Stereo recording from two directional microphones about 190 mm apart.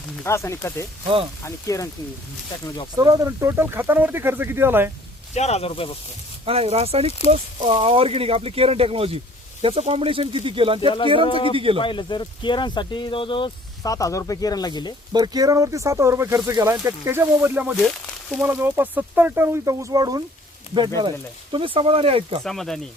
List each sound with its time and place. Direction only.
0.2 s speech: 15° left (ahead or behind)
2.9 s speech: 20° right (ahead or behind)
5.3 s speech: 35° left (ahead or behind)
6.4 s speech: 30° right (ahead or behind)
10.8 s speech: 25° left (ahead or behind)
11.5 s speech: 30° right (ahead or behind)
11.8 s speech: 25° left (ahead or behind)
15.1 s speech: 20° right (ahead or behind)
18.0 s a sound: centre (ahead or behind)
18.4 s speech: 10° right (ahead or behind)
21.5 s speech: 30° right (ahead or behind)
22.4 s speech: centre (ahead or behind)